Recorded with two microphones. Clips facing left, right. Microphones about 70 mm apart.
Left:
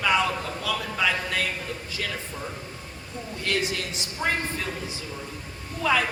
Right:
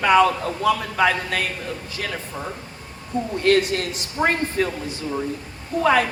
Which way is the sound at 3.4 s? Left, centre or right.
Right.